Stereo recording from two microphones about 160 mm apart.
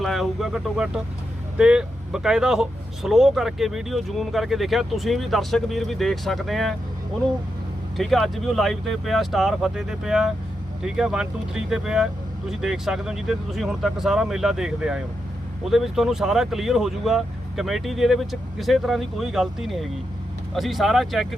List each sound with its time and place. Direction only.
0.0 s speech: centre (ahead or behind)
7.9 s speech: centre (ahead or behind)